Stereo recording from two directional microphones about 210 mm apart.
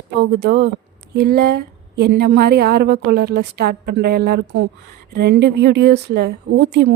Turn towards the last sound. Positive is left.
turn(degrees=-55)  # may be behind; listen again after turning